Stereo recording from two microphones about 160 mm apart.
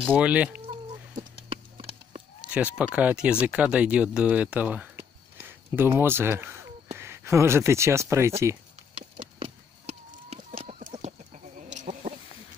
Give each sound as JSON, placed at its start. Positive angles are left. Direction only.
{"t": 0.0, "sound": "speech", "side_deg": -10}
{"t": 1.1, "sound": "a sound", "side_deg": -35}
{"t": 2.5, "sound": "speech", "side_deg": -10}
{"t": 9.1, "sound": "chicken", "side_deg": -35}